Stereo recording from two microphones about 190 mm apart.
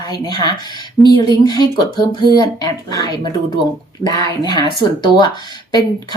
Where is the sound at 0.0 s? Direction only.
20° left (ahead or behind).